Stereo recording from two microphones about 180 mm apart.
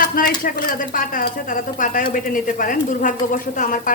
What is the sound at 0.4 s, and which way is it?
A woman's voice, 50° left (ahead or behind).